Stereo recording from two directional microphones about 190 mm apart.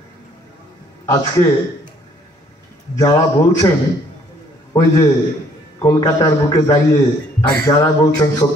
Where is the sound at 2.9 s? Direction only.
20° left (ahead or behind).